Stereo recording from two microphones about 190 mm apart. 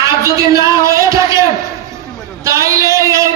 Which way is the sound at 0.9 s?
15° right (ahead or behind).